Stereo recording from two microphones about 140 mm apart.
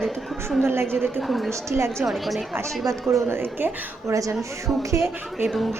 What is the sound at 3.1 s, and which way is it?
A woman's voice, 20° right (ahead or behind).